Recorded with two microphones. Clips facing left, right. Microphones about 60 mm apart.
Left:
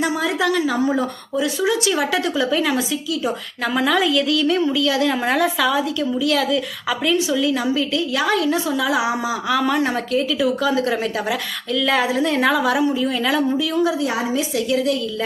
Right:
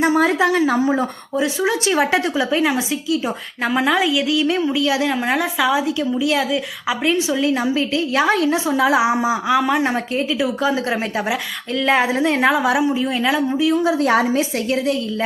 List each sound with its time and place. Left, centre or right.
0.0 s a woman's voice: right
0.3 s a woman's voice: right
3.7 s a woman's voice: centre
5.1 s a woman's voice: centre; by 11.3 s right
11.7 s a woman's voice: right
14.0 s a woman's voice: right
14.3 s a woman's voice: right